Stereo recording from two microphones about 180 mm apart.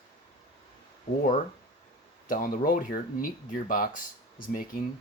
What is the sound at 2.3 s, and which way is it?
Speech, 50° left (ahead or behind).